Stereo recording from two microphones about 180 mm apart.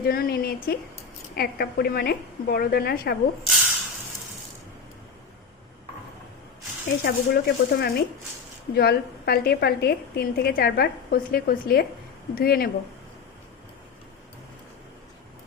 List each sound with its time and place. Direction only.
0.0 s a woman's voice: 60° left (ahead or behind)
6.8 s a woman's voice: 60° left (ahead or behind)